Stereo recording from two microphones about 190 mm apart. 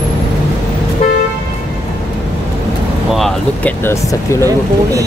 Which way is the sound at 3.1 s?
5° left (ahead or behind).